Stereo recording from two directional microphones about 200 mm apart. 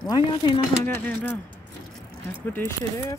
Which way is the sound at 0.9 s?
10° left (ahead or behind).